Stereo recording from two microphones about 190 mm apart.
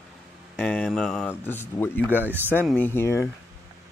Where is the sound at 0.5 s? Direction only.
5° left (ahead or behind).